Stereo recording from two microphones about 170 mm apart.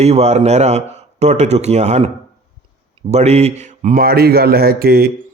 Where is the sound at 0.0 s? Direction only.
40° right (ahead or behind).